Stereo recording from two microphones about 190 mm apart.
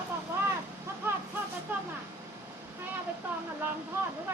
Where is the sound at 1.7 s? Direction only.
10° right (ahead or behind).